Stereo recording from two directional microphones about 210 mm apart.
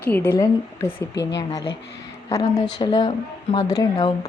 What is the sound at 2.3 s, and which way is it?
A woman's voice, 15° left (ahead or behind).